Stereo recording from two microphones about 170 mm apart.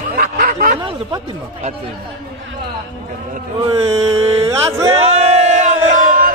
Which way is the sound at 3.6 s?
15° right (ahead or behind).